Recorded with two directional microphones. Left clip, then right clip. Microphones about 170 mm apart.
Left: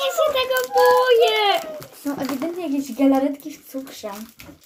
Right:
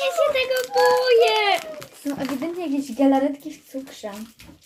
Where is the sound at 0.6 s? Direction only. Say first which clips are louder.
Left 4 dB; 40° right (ahead or behind).